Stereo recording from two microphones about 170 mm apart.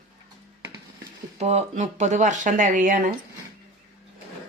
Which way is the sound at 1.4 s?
40° right (ahead or behind).